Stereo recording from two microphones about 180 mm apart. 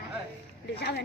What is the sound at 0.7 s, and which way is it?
Speech, 65° left (ahead or behind).